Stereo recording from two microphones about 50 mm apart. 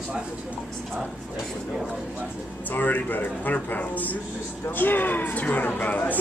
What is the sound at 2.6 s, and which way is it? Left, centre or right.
Speech, left.